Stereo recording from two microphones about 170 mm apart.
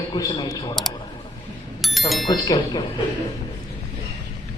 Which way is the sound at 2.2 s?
20° left (ahead or behind).